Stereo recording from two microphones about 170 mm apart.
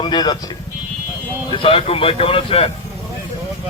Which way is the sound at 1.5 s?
30° left (ahead or behind).